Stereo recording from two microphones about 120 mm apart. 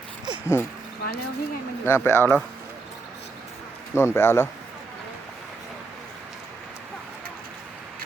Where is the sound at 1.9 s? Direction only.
20° left (ahead or behind).